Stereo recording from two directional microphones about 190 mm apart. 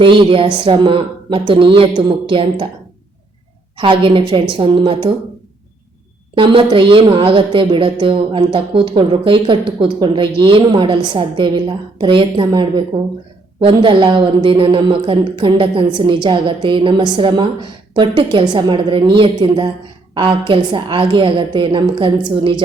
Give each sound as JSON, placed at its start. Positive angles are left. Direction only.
{"t": 0.2, "sound": "a woman's voice", "side_deg": -25}
{"t": 3.8, "sound": "a woman's voice", "side_deg": -25}
{"t": 6.3, "sound": "a woman's voice", "side_deg": -25}